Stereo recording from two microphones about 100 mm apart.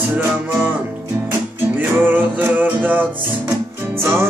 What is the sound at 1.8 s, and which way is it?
Music, 20° right (ahead or behind).